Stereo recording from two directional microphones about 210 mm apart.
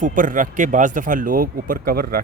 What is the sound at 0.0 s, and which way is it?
Speech, 40° right (ahead or behind).